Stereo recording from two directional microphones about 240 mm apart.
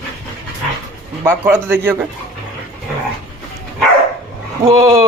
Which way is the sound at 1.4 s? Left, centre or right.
Centre.